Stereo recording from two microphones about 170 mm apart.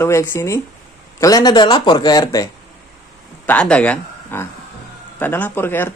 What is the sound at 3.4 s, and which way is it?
Speech, 5° left (ahead or behind).